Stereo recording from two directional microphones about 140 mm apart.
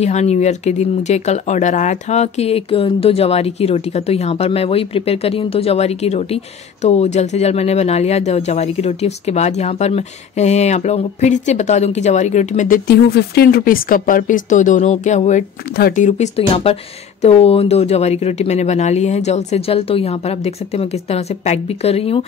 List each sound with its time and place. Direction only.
0.0 s speech: 50° left (ahead or behind); by 12.8 s 70° left (ahead or behind)
13.4 s speech: 90° left; by 22.2 s 45° left (ahead or behind)